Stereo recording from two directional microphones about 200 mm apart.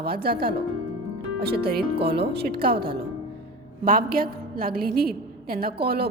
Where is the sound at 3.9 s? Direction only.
45° right (ahead or behind).